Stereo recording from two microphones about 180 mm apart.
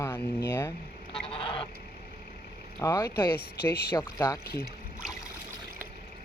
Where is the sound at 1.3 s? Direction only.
30° left (ahead or behind).